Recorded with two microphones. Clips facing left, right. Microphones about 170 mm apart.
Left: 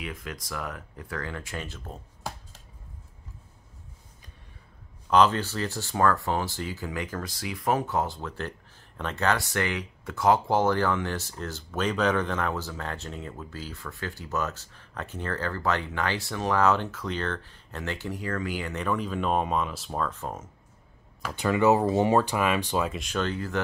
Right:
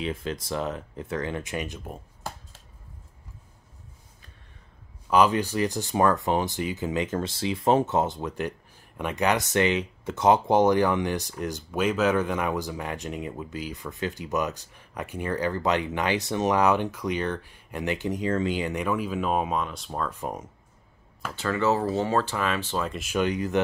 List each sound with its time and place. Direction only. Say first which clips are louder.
0.0 s speech: right 7 dB; 30° right (ahead or behind)
5.1 s speech: right 1 dB; 10° right (ahead or behind)
20.1 s speech: right 3 dB; 15° right (ahead or behind)
21.4 s speech: left 3 dB; 15° left (ahead or behind)
22.8 s speech: right 3 dB; 5° right (ahead or behind)